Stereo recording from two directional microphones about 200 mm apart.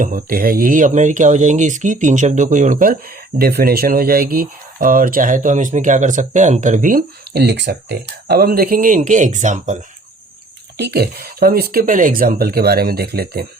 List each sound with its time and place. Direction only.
0.0 s speech: 45° right (ahead or behind)
10.8 s speech: 55° right (ahead or behind)